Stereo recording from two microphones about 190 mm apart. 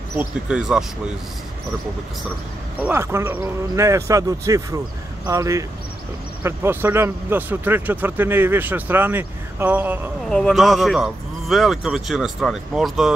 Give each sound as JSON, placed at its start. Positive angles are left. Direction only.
{"t": 0.2, "sound": "speech", "side_deg": -5}
{"t": 2.8, "sound": "a man's voice", "side_deg": -15}